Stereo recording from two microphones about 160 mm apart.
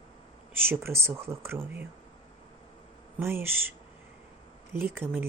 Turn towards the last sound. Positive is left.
turn(degrees=-15)  # may be behind; listen again after turning